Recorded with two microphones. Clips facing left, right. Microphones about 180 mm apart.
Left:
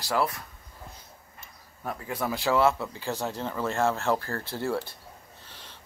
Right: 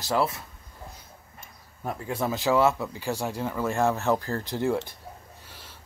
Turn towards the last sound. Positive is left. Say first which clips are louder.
# right 1 dB
turn(degrees=-10)  # may be behind; listen again after turning